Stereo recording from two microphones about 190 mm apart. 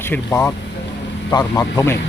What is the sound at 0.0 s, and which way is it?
Speech, 10° left (ahead or behind).